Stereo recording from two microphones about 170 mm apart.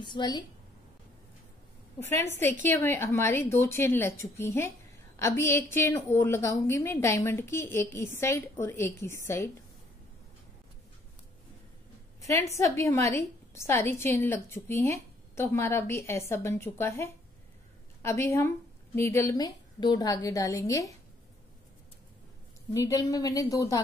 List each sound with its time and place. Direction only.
0.0 s a woman's voice: 25° left (ahead or behind)
2.0 s a woman's voice: 15° left (ahead or behind)
12.2 s a woman's voice: 15° left (ahead or behind)
22.8 s a woman's voice: 20° left (ahead or behind)